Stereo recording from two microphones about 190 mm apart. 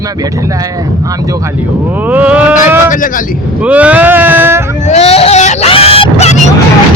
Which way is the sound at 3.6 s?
5° right (ahead or behind).